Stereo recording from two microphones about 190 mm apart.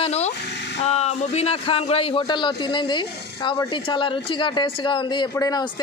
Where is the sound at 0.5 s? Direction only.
65° left (ahead or behind).